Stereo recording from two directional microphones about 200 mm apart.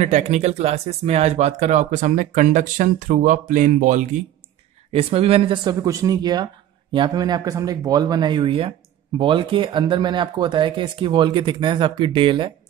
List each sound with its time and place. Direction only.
0.0 s speech: 35° right (ahead or behind)